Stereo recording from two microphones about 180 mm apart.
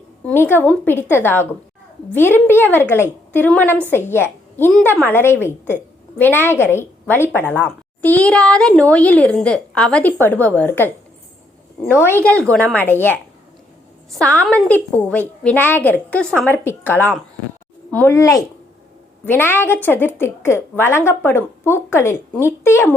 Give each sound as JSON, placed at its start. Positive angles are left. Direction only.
{"t": 0.3, "sound": "a woman's voice", "side_deg": 10}